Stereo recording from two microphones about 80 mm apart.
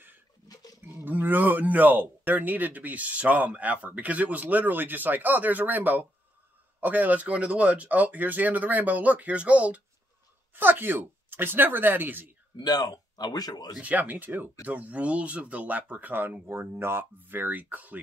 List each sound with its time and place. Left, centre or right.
0.8 s speech: right
12.5 s speech: left
13.7 s speech: centre